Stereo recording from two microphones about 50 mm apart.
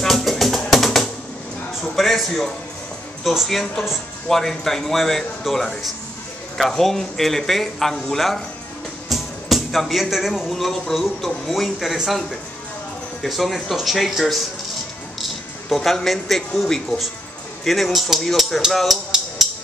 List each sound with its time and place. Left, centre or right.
0.0 s music: centre
2.0 s a man's voice: centre
9.1 s music: centre
10.5 s speech: centre
13.2 s speech: centre